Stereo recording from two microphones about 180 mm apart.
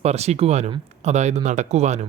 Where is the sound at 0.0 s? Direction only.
35° right (ahead or behind).